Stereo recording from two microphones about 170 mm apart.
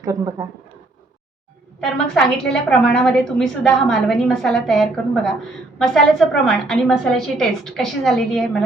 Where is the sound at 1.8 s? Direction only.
5° left (ahead or behind).